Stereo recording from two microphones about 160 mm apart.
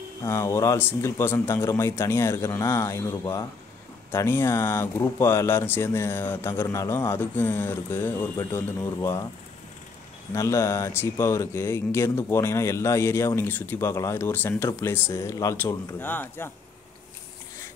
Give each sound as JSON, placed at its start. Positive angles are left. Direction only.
{"t": 0.2, "sound": "speech", "side_deg": 15}
{"t": 10.3, "sound": "speech", "side_deg": 15}